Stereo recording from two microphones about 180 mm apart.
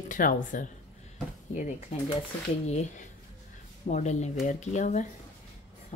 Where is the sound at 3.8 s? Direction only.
45° left (ahead or behind).